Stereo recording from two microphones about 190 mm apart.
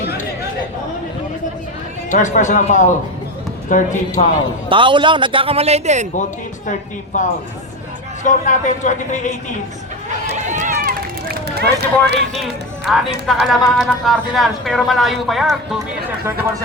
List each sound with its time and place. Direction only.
2.0 s speech: 40° left (ahead or behind)
4.7 s a man's voice: 25° right (ahead or behind)
6.7 s speech: 40° left (ahead or behind)
10.3 s run: 40° right (ahead or behind)
11.5 s speech: 60° right (ahead or behind)
12.9 s speech: centre (ahead or behind)